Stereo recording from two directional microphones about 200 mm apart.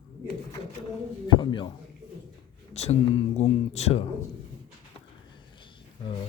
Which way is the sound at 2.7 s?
35° left (ahead or behind).